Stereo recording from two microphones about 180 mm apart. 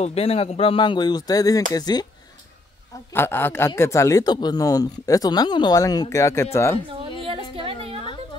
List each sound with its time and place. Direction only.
0.0 s a man's voice: 35° left (ahead or behind)
3.1 s a man's voice: 10° left (ahead or behind)
7.2 s a sound: 30° right (ahead or behind)